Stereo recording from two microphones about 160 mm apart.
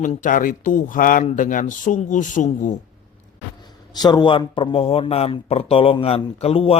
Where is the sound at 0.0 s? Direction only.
55° left (ahead or behind).